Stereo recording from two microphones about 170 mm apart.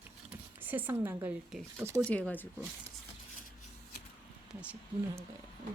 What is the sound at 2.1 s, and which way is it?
Speech, 5° left (ahead or behind).